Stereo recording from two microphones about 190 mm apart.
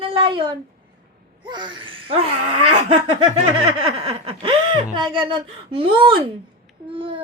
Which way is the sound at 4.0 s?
30° right (ahead or behind).